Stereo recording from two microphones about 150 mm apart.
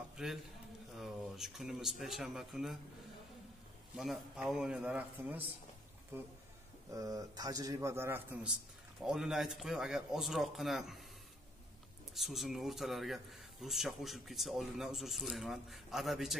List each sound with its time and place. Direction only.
0.2 s a man's voice: 5° right (ahead or behind)
3.9 s a man's voice: 5° right (ahead or behind)
9.0 s a man's voice: 5° right (ahead or behind)
12.1 s a man's voice: centre (ahead or behind)